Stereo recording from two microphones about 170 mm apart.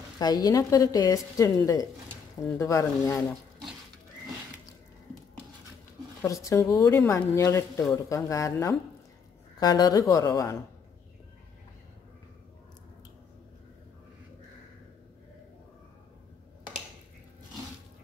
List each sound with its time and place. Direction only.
0.2 s a woman's voice: 25° left (ahead or behind)
6.2 s a woman's voice: 20° left (ahead or behind)